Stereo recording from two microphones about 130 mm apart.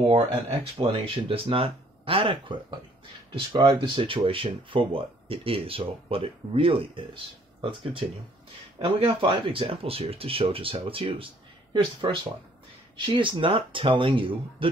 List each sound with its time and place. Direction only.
0.0 s speech: 45° right (ahead or behind)
8.7 s speech: 45° right (ahead or behind)